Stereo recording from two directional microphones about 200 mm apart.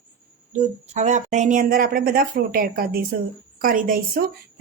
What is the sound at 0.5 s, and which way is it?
A woman's voice, 40° right (ahead or behind).